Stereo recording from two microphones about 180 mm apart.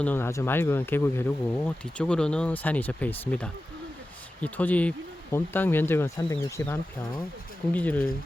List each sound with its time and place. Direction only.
0.0 s speech: 10° left (ahead or behind)